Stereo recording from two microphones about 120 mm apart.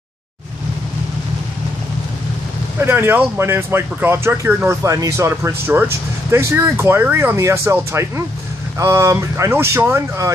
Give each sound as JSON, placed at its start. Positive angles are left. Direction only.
{"t": 2.8, "sound": "speech", "side_deg": -20}
{"t": 4.8, "sound": "speech", "side_deg": -25}